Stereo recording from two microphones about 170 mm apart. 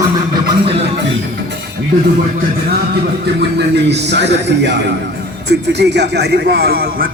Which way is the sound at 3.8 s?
90° right.